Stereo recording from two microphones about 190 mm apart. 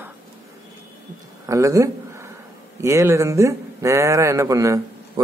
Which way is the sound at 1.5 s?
15° right (ahead or behind).